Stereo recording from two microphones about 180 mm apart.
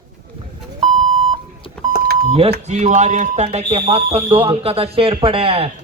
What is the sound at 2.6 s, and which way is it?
Speech, 40° right (ahead or behind).